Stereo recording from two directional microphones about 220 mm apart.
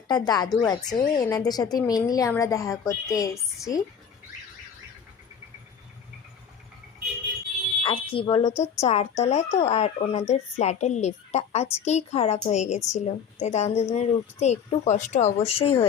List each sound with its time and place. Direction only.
0.1 s a woman's voice: 20° left (ahead or behind)
7.9 s speech: 25° left (ahead or behind)